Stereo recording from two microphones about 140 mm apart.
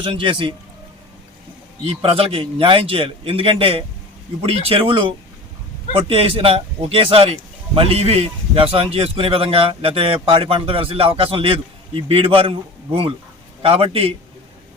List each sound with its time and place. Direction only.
0.0 s a man's voice: 40° right (ahead or behind)
1.8 s a man's voice: 45° right (ahead or behind)
13.6 s speech: 45° right (ahead or behind)